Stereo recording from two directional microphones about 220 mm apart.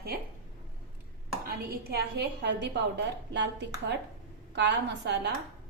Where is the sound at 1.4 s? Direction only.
45° right (ahead or behind).